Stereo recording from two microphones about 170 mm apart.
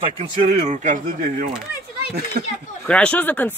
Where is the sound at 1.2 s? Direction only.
60° right (ahead or behind).